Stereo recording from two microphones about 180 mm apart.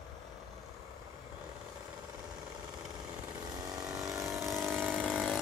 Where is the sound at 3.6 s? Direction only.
20° right (ahead or behind).